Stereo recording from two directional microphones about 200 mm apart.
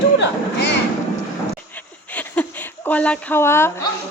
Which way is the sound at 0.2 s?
55° left (ahead or behind).